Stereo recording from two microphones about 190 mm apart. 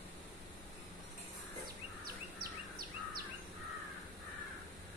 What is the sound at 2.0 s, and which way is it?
Bird vocalization, 50° right (ahead or behind).